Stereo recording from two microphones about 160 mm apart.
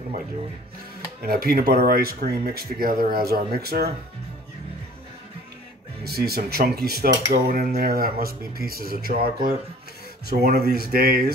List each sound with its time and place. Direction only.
1.2 s speech: 75° right (ahead or behind)
6.0 s speech: 80° right
10.2 s speech: 80° right